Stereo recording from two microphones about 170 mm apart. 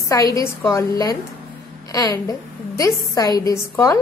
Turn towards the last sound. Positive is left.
turn(degrees=20)  # may be behind; listen again after turning